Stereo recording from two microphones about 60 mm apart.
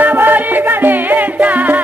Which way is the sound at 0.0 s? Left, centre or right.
Right.